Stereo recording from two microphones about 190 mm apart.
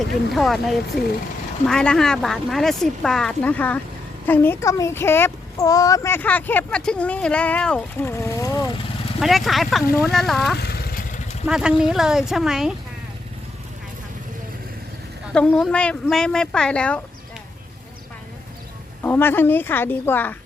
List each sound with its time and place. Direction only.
0.3 s speech: centre (ahead or behind); by 8.8 s 20° left (ahead or behind)
9.2 s speech: centre (ahead or behind)
10.6 s motorcycle: 55° left (ahead or behind)
11.4 s speech: 5° right (ahead or behind)
15.3 s speech: 5° left (ahead or behind)
19.0 s speech: 10° left (ahead or behind)